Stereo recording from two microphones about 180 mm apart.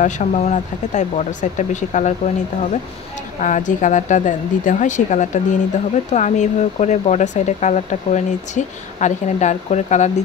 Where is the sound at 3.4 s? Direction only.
45° left (ahead or behind).